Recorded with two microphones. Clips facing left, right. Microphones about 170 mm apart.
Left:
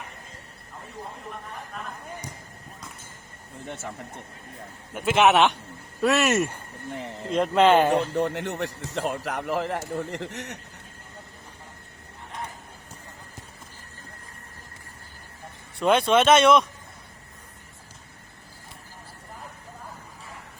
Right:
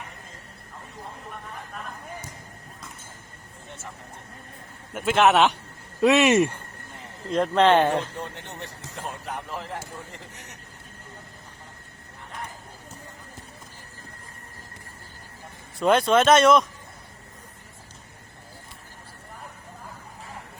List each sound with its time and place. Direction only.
4.9 s speech: centre (ahead or behind)
7.3 s speech: 5° left (ahead or behind)
8.1 s speech: 85° left
15.8 s speech: centre (ahead or behind)